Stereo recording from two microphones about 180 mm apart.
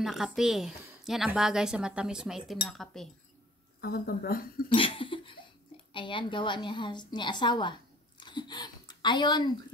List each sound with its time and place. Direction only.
0.0 s a woman's voice: centre (ahead or behind)
3.8 s speech: 55° left (ahead or behind)
4.7 s laughter: 30° left (ahead or behind)
5.9 s a woman's voice: 25° left (ahead or behind)